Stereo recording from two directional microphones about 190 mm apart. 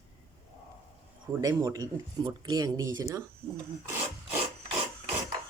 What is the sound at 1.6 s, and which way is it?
Speech, 20° right (ahead or behind).